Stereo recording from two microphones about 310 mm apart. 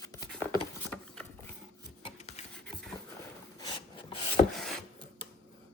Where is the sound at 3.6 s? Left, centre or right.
Centre.